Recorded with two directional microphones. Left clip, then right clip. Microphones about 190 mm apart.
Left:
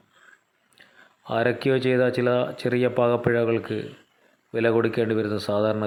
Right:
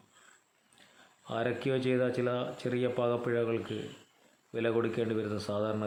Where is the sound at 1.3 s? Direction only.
25° left (ahead or behind).